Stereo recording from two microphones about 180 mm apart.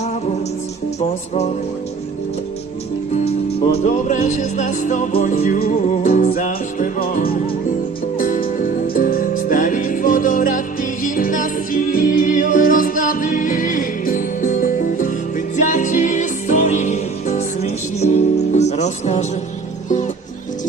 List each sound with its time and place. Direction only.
3.7 s music: 40° left (ahead or behind)
5.4 s music: 55° left (ahead or behind); by 19.2 s 40° left (ahead or behind)